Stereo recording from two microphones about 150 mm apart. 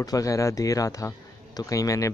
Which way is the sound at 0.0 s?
25° left (ahead or behind).